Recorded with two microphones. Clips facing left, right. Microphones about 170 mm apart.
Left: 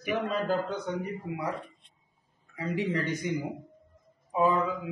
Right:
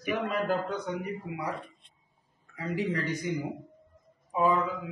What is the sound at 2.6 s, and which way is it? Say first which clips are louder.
Mantra: left 1 dB; 25° left (ahead or behind).